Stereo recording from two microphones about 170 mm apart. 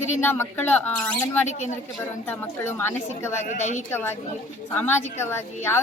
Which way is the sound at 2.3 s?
15° left (ahead or behind).